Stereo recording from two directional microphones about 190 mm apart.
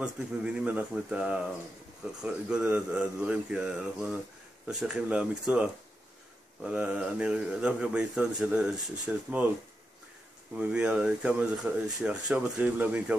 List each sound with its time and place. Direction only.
0.0 s speech: 5° right (ahead or behind)
10.5 s speech: 5° right (ahead or behind)